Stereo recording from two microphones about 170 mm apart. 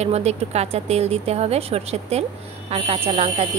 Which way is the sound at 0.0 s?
40° right (ahead or behind).